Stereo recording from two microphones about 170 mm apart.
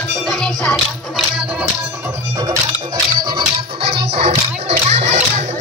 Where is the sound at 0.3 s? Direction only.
Centre (ahead or behind).